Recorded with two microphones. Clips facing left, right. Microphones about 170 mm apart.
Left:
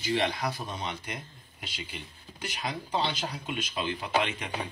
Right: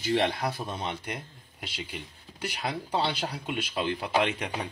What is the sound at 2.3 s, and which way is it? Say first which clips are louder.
Speech: right 3 dB; 60° right (ahead or behind).